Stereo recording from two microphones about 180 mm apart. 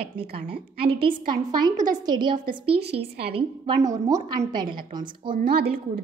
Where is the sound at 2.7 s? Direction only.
65° right (ahead or behind).